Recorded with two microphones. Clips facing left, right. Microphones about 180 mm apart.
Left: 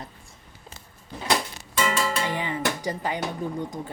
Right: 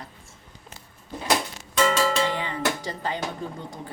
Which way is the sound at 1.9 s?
10° left (ahead or behind).